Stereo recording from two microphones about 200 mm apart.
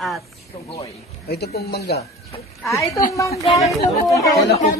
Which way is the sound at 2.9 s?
15° left (ahead or behind).